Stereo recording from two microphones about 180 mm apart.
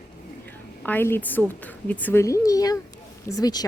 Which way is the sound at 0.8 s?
10° left (ahead or behind).